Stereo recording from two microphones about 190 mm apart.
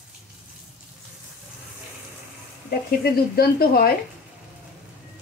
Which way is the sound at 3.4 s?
55° left (ahead or behind).